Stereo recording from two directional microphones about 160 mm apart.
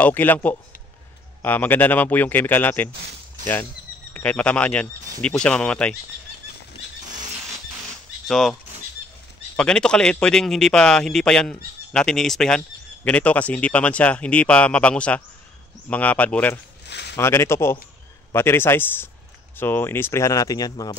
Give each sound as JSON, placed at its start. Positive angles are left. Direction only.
{"t": 0.0, "sound": "a man's voice", "side_deg": 10}
{"t": 4.1, "sound": "a man's voice", "side_deg": 10}
{"t": 8.3, "sound": "speech", "side_deg": 0}
{"t": 9.6, "sound": "a man's voice", "side_deg": 5}
{"t": 16.8, "sound": "a sound", "side_deg": 90}
{"t": 17.2, "sound": "a man's voice", "side_deg": 15}